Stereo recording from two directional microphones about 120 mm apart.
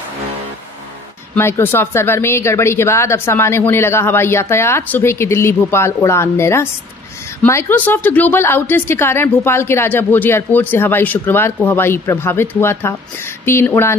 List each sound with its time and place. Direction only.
1.3 s a woman's voice: 20° left (ahead or behind)